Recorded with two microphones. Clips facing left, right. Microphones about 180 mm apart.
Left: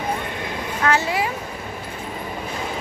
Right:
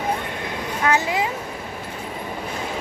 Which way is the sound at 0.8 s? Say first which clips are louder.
Even; 15° right (ahead or behind).